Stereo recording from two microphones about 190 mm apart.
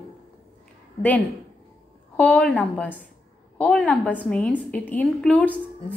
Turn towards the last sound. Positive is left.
turn(degrees=5)  # may be behind; listen again after turning